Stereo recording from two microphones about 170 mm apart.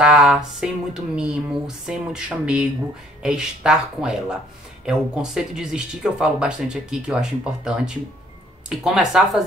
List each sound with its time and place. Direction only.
0.0 s speech: 5° right (ahead or behind)